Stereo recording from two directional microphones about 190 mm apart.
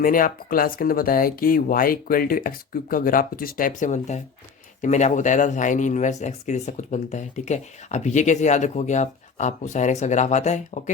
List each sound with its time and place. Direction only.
0.0 s speech: 45° left (ahead or behind)